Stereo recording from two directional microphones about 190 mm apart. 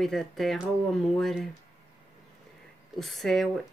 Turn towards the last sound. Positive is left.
turn(degrees=0)  # may be behind; listen again after turning